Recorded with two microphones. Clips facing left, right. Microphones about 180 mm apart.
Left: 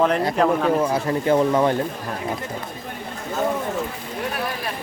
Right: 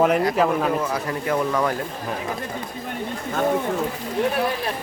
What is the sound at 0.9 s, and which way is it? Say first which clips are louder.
Speech: left 5 dB; 25° left (ahead or behind).